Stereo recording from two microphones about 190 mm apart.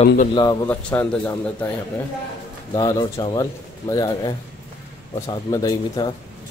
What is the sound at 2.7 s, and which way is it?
Speech, 25° left (ahead or behind).